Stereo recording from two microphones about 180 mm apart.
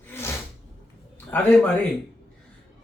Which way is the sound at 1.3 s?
10° left (ahead or behind).